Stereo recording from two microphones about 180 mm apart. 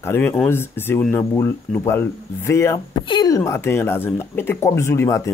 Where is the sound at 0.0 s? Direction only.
15° left (ahead or behind).